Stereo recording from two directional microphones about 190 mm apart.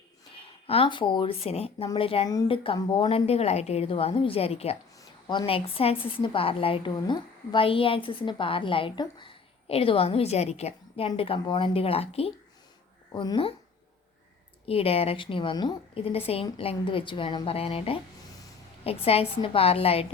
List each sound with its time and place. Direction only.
0.7 s a woman's voice: 25° left (ahead or behind)
14.7 s a woman's voice: 30° left (ahead or behind)